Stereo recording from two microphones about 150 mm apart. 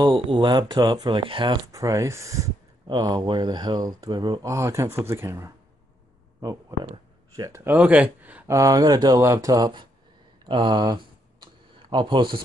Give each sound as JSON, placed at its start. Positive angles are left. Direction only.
{"t": 0.0, "sound": "speech", "side_deg": -30}
{"t": 6.7, "sound": "a sound", "side_deg": -20}
{"t": 7.3, "sound": "speech", "side_deg": -20}
{"t": 8.5, "sound": "speech", "side_deg": -25}
{"t": 10.4, "sound": "computer keyboard", "side_deg": -35}